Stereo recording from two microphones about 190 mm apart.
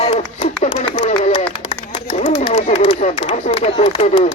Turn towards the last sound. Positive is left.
turn(degrees=35)  # may be behind; listen again after turning